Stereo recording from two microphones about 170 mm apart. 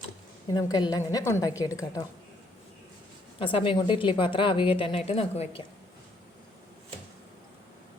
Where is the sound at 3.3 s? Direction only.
30° left (ahead or behind).